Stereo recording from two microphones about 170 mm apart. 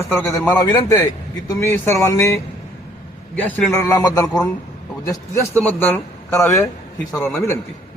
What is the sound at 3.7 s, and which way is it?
Speech, 20° left (ahead or behind).